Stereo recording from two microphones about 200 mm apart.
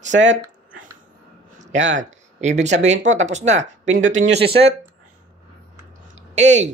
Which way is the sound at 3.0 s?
35° right (ahead or behind).